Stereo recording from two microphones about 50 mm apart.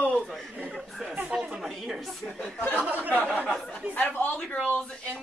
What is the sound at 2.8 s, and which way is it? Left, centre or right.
Speech, right.